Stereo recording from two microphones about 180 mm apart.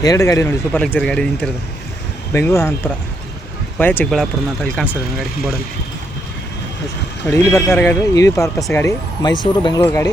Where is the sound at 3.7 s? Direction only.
10° left (ahead or behind).